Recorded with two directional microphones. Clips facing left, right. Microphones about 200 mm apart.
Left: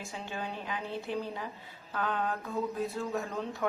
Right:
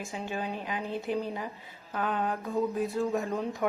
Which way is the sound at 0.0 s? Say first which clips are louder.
Right 4 dB; 15° right (ahead or behind).